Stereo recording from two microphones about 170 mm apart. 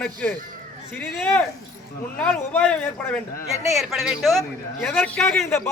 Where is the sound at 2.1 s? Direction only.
5° left (ahead or behind).